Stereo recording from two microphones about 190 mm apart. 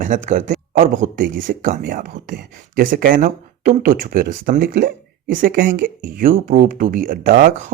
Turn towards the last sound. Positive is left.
turn(degrees=-45)  # may be behind; listen again after turning